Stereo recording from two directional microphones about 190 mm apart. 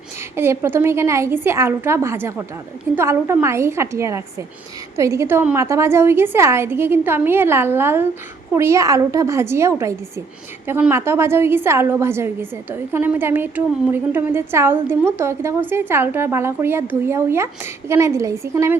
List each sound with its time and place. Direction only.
0.3 s a woman's voice: 15° right (ahead or behind)